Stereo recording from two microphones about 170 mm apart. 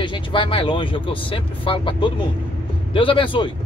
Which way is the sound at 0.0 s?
30° left (ahead or behind).